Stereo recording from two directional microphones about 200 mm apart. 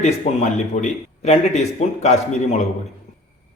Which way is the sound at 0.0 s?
35° left (ahead or behind).